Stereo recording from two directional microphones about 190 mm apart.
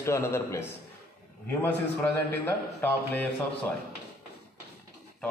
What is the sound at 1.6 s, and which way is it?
A man's voice, 10° left (ahead or behind).